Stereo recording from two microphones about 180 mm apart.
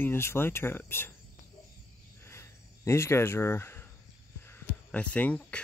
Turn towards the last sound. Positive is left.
turn(degrees=5)  # may be behind; listen again after turning